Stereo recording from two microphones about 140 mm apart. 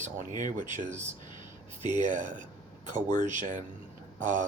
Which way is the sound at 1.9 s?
65° right (ahead or behind).